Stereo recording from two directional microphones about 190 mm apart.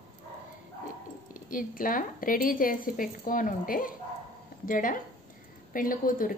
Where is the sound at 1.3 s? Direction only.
45° left (ahead or behind).